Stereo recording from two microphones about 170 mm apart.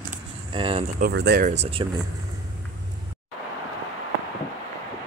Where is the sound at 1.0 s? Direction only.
75° right (ahead or behind).